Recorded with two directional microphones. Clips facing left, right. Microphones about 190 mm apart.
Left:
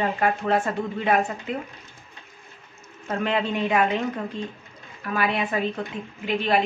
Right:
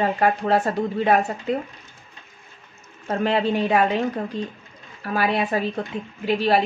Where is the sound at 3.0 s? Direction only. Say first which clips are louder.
Right 4 dB; 35° right (ahead or behind).